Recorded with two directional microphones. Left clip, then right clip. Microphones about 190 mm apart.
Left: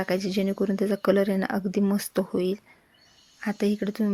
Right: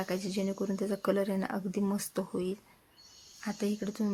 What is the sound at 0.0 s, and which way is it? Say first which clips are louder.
Speech: left 8 dB; 30° left (ahead or behind).